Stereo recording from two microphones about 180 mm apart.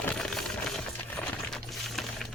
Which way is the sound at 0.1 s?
Centre (ahead or behind).